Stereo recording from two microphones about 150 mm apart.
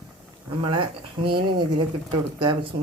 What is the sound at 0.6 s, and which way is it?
Speech, 35° right (ahead or behind).